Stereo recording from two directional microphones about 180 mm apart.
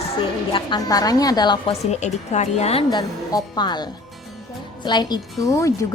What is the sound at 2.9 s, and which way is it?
A woman's voice, 20° left (ahead or behind).